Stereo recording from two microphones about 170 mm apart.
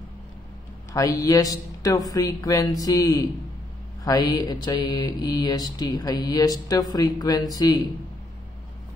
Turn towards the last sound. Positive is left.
turn(degrees=20)  # may be behind; listen again after turning